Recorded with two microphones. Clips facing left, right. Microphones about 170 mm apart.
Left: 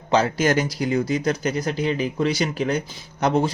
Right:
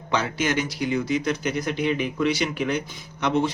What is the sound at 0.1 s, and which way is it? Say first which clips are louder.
Speech: left 5 dB; 35° left (ahead or behind).